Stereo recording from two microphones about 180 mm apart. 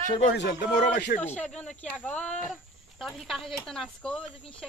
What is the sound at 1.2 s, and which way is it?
Speech, 10° left (ahead or behind).